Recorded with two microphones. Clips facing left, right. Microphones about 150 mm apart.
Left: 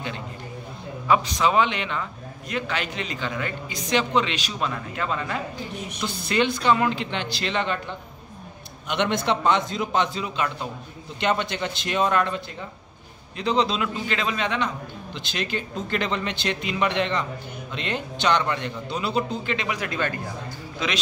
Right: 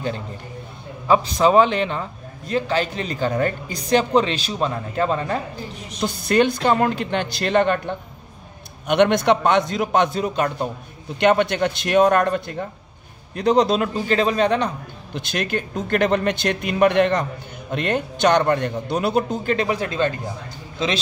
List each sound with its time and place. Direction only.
1.0 s a man's voice: 35° right (ahead or behind)
11.1 s a man's voice: 60° right (ahead or behind); by 14.7 s 40° right (ahead or behind)
15.1 s speech: 55° right (ahead or behind)
19.5 s speech: 35° right (ahead or behind)